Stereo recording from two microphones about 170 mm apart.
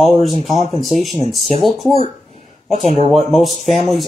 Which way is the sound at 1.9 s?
40° left (ahead or behind).